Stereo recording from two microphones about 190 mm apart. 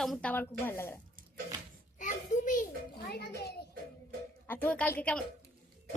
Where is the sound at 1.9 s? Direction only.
40° left (ahead or behind); by 3.6 s 60° left (ahead or behind).